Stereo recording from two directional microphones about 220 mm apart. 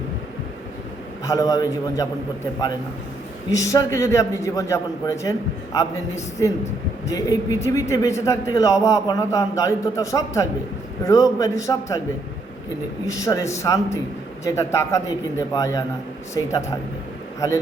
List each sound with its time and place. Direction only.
1.2 s a man's voice: 15° left (ahead or behind)
3.5 s a man's voice: 15° left (ahead or behind)
13.1 s a man's voice: 15° left (ahead or behind)